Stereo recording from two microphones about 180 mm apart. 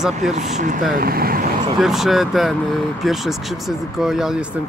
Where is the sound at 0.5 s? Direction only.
45° right (ahead or behind).